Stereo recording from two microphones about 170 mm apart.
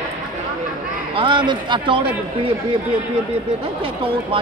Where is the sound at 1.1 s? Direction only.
30° right (ahead or behind).